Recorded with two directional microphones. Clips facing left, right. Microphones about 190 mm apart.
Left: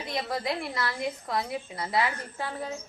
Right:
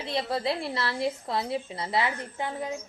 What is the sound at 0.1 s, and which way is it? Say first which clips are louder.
A woman's voice: right 2 dB; 30° right (ahead or behind).